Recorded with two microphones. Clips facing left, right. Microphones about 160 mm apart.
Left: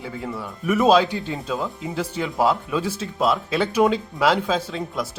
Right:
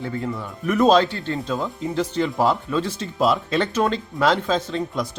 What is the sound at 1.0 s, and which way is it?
Speech, 15° left (ahead or behind).